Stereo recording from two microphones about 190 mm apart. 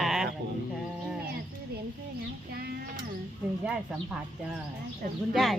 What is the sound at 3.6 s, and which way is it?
Speech, 5° right (ahead or behind).